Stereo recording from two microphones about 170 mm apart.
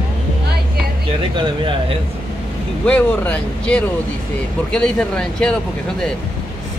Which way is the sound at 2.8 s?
10° left (ahead or behind).